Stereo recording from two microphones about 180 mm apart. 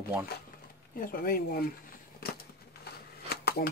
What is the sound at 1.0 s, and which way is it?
Speech, 55° left (ahead or behind).